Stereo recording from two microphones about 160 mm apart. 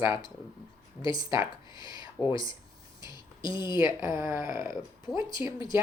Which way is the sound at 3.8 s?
20° right (ahead or behind).